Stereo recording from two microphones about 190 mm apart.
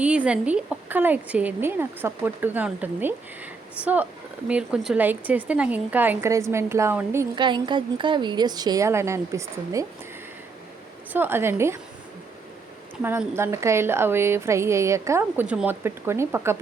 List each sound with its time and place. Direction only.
0.0 s a woman's voice: 5° right (ahead or behind)
7.3 s a woman's voice: 25° right (ahead or behind)
11.1 s a woman's voice: 10° right (ahead or behind)
13.0 s a woman's voice: 10° right (ahead or behind)